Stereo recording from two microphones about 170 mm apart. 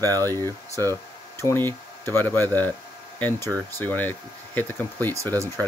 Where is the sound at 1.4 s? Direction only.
15° left (ahead or behind).